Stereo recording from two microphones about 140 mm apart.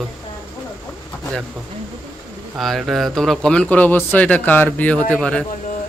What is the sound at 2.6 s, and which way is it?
Speech, centre (ahead or behind).